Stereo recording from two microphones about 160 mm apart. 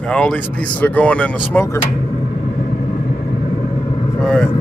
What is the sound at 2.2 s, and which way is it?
Vehicle, 45° left (ahead or behind).